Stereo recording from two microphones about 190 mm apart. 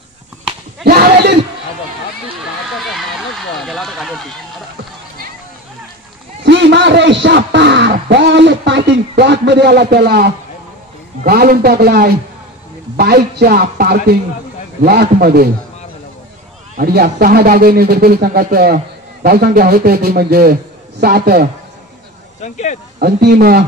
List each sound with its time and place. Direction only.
0.8 s a sound: 55° right (ahead or behind)
2.7 s speech: centre (ahead or behind)
6.4 s a man's voice: 65° right (ahead or behind)
16.7 s speech: 50° right (ahead or behind)
22.4 s speech: 40° left (ahead or behind)
22.9 s a man's voice: 55° right (ahead or behind)